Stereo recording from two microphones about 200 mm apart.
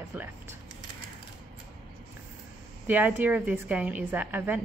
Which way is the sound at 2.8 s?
10° right (ahead or behind).